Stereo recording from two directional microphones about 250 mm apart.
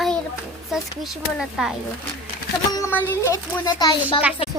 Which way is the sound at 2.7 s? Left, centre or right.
Centre.